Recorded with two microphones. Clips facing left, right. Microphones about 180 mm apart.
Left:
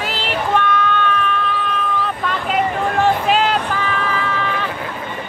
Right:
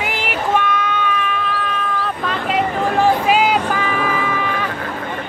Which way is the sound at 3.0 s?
10° right (ahead or behind).